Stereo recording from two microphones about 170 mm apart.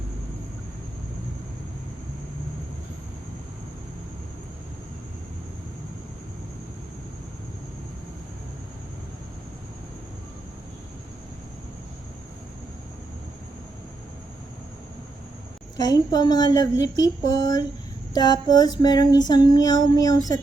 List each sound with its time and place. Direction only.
15.8 s female singing: 25° left (ahead or behind)